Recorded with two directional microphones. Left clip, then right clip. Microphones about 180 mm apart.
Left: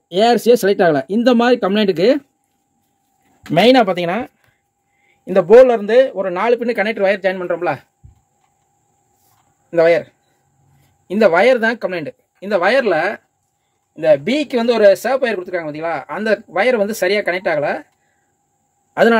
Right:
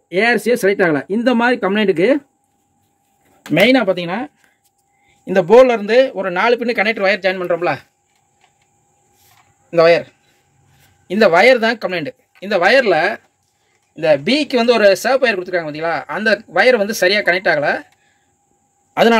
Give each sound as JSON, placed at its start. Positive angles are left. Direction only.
{"t": 0.1, "sound": "speech", "side_deg": 5}
{"t": 3.5, "sound": "speech", "side_deg": 45}
{"t": 5.2, "sound": "speech", "side_deg": 0}
{"t": 9.7, "sound": "speech", "side_deg": 5}